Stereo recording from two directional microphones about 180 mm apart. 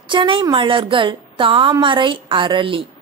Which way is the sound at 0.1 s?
25° right (ahead or behind).